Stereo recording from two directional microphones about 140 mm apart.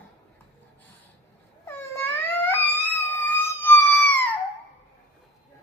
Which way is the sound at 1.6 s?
15° left (ahead or behind).